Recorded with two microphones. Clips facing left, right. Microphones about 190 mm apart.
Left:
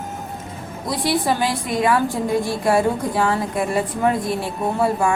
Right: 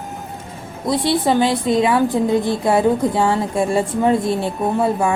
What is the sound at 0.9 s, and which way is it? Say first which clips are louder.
Speech: right 4 dB; 25° right (ahead or behind).